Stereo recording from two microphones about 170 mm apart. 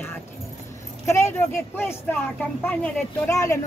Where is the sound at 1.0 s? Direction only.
15° left (ahead or behind).